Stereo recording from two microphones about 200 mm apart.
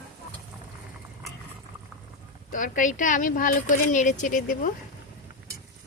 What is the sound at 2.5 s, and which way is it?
Speech, 40° left (ahead or behind).